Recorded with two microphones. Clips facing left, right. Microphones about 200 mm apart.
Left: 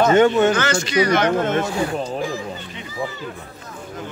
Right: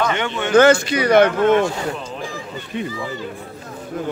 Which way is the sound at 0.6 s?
55° right (ahead or behind).